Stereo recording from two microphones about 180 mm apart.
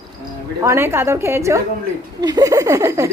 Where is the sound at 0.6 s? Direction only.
15° right (ahead or behind).